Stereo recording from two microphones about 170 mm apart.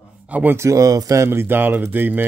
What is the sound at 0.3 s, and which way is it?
Speech, 10° right (ahead or behind).